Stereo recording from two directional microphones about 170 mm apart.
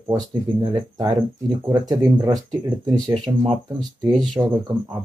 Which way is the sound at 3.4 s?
35° right (ahead or behind).